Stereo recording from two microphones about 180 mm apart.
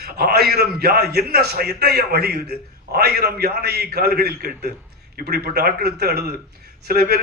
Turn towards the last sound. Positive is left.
turn(degrees=-60)  # may be behind; listen again after turning